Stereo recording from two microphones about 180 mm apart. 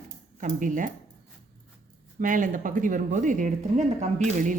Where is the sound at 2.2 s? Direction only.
50° right (ahead or behind).